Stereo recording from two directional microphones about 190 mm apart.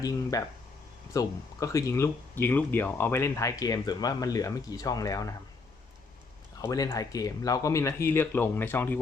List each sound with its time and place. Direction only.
0.0 s speech: 20° left (ahead or behind)
6.6 s speech: 15° left (ahead or behind)